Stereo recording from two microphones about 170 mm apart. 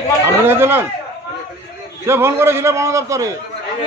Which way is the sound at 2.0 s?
15° right (ahead or behind).